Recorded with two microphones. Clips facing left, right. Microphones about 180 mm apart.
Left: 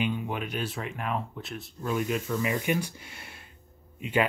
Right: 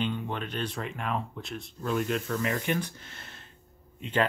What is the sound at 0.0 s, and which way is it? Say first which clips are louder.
Speech: left 1 dB; 10° left (ahead or behind).